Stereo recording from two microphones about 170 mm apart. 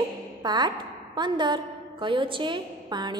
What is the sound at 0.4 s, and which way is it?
A woman's voice, 25° right (ahead or behind).